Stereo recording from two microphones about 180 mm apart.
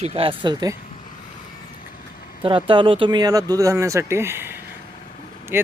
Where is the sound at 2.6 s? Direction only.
30° right (ahead or behind).